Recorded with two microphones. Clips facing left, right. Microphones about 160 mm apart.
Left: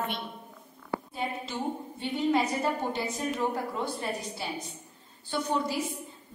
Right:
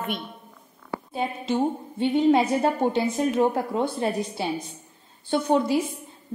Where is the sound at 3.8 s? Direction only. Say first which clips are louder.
Right 8 dB; 60° right (ahead or behind).